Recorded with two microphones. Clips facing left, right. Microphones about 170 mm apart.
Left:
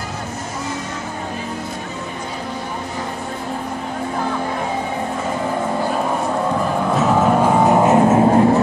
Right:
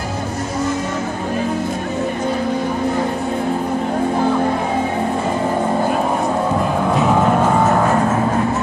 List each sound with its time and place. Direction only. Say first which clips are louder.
6.9 s music: even; centre (ahead or behind); by 8.5 s 30° left (ahead or behind)